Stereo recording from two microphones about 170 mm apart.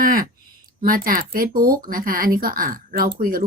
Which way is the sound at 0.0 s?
55° right (ahead or behind).